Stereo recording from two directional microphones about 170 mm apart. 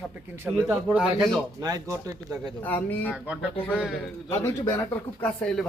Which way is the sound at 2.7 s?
10° left (ahead or behind).